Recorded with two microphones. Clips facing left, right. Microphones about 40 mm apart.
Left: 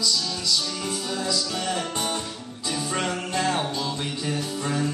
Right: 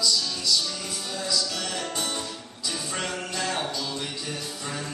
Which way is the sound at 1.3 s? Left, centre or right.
Left.